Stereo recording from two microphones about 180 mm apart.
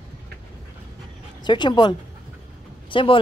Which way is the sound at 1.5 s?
25° left (ahead or behind).